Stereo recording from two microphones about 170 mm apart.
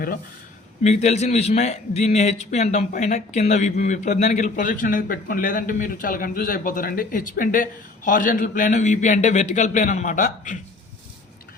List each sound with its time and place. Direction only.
0.8 s a man's voice: 40° left (ahead or behind)